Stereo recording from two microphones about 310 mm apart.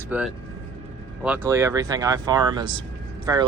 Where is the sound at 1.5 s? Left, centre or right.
Centre.